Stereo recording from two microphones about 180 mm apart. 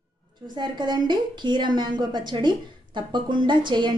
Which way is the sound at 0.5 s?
25° right (ahead or behind).